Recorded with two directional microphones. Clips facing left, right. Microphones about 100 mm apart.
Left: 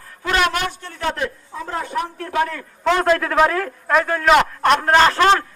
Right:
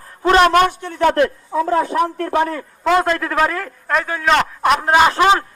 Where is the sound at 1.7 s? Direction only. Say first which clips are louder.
Right 7 dB; 80° right.